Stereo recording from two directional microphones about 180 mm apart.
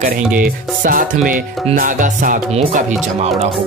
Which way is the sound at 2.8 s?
40° right (ahead or behind).